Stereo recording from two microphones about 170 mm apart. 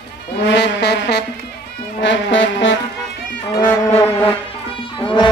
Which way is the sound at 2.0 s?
90° left.